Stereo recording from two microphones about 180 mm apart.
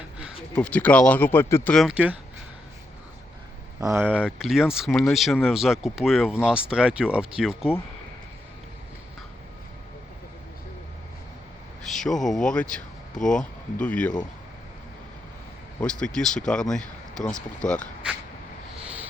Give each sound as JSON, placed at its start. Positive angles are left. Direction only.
{"t": 0.5, "sound": "speech", "side_deg": 5}
{"t": 1.7, "sound": "speech", "side_deg": 0}
{"t": 3.8, "sound": "speech", "side_deg": -15}
{"t": 11.9, "sound": "speech", "side_deg": 0}
{"t": 13.2, "sound": "speech", "side_deg": 45}
{"t": 13.8, "sound": "speech", "side_deg": 5}
{"t": 15.8, "sound": "speech", "side_deg": 5}